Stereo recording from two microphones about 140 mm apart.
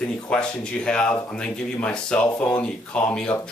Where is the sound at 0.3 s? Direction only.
5° left (ahead or behind).